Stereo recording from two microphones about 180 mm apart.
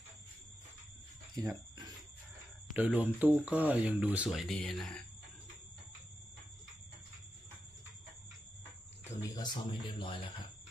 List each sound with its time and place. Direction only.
1.3 s a sound: 20° right (ahead or behind)
2.7 s speech: 10° right (ahead or behind)
9.3 s speech: 25° left (ahead or behind)